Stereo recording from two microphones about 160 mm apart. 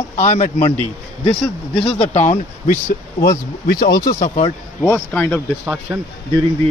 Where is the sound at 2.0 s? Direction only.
45° left (ahead or behind).